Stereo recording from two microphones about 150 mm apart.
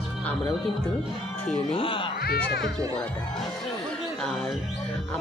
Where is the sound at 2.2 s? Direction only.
90° left.